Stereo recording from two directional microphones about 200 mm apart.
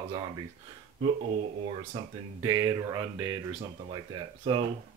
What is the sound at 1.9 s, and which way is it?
Speech, 25° right (ahead or behind).